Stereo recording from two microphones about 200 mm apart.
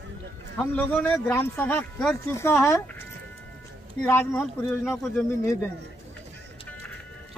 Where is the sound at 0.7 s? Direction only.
10° left (ahead or behind).